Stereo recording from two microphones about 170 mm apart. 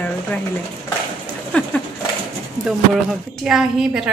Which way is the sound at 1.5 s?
5° left (ahead or behind).